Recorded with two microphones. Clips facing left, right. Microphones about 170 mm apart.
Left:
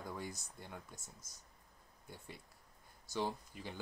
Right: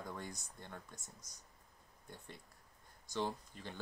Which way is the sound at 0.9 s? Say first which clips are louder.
Even; 15° right (ahead or behind).